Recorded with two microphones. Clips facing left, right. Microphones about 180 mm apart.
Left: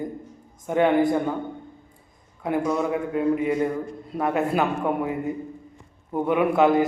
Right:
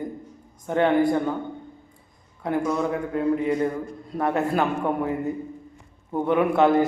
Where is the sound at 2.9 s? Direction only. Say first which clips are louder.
Left 1 dB; 15° left (ahead or behind).